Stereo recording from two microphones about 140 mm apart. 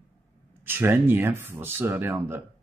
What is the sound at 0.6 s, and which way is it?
Speech, 15° right (ahead or behind).